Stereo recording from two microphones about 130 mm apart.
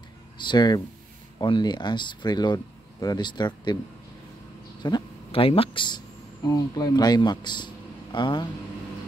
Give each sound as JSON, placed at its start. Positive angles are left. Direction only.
{"t": 0.4, "sound": "speech", "side_deg": 35}
{"t": 4.8, "sound": "speech", "side_deg": 35}
{"t": 5.3, "sound": "speech", "side_deg": 45}